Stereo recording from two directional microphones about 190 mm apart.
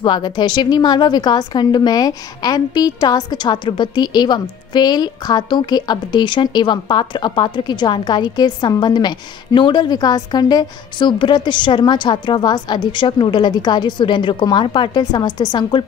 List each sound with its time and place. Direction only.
0.0 s a woman's voice: 25° left (ahead or behind)